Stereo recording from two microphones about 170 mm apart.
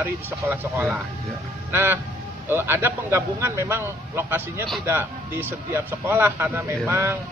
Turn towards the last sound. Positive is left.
turn(degrees=-15)  # may be behind; listen again after turning